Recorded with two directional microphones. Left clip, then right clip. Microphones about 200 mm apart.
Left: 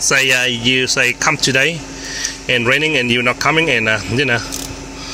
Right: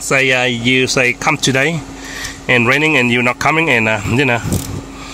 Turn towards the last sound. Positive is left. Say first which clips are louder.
# right 1 dB
turn(degrees=-35)  # may be behind; listen again after turning